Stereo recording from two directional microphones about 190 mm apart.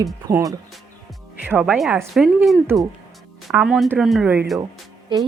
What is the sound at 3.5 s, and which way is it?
Speech, centre (ahead or behind).